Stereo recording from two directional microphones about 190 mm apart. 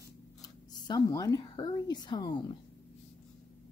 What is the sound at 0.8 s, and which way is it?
Speech, 20° left (ahead or behind).